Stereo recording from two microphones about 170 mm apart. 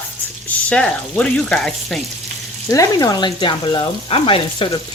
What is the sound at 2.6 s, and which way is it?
Speech, 20° left (ahead or behind).